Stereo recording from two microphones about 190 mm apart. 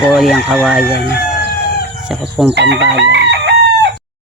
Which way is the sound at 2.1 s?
Centre (ahead or behind).